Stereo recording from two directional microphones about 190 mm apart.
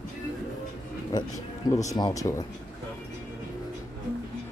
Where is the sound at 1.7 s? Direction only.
15° left (ahead or behind).